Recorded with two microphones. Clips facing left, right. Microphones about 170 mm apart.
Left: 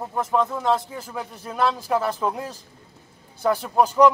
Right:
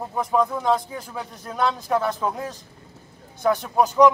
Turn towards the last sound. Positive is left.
turn(degrees=10)  # may be behind; listen again after turning